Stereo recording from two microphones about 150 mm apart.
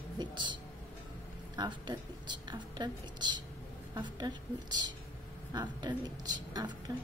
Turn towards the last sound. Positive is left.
turn(degrees=-25)  # may be behind; listen again after turning